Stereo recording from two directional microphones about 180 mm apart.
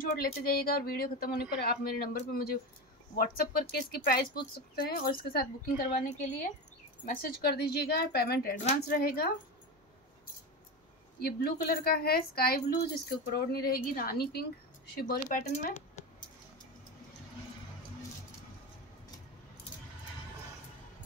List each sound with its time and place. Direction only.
0.2 s speech: 55° left (ahead or behind)
7.2 s speech: 60° left (ahead or behind)
11.1 s speech: 55° left (ahead or behind)
15.2 s speech: 40° left (ahead or behind)